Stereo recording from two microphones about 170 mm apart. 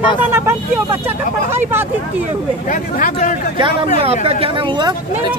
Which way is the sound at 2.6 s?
50° left (ahead or behind).